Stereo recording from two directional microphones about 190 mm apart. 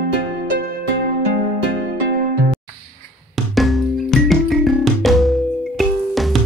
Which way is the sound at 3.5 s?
Centre (ahead or behind).